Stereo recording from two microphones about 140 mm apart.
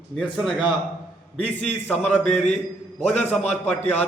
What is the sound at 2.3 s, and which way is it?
Speech, 55° left (ahead or behind).